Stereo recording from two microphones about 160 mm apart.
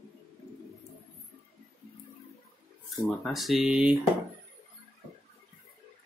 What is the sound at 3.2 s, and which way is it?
Speech, centre (ahead or behind).